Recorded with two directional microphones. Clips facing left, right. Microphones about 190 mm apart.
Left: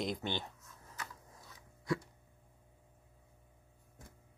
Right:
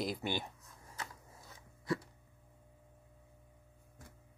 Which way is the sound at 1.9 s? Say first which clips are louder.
Left 1 dB; centre (ahead or behind).